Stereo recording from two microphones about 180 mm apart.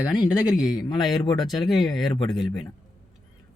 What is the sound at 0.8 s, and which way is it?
Speech, 20° left (ahead or behind).